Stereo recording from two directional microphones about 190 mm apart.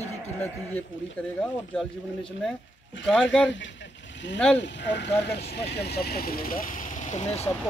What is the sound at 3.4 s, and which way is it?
Vehicle, 70° left (ahead or behind).